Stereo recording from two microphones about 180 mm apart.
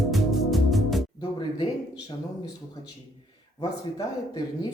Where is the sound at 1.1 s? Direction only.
25° left (ahead or behind).